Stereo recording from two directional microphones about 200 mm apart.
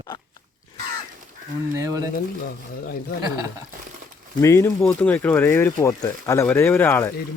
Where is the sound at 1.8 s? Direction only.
15° right (ahead or behind).